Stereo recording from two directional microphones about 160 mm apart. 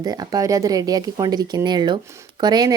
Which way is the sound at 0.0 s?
25° right (ahead or behind).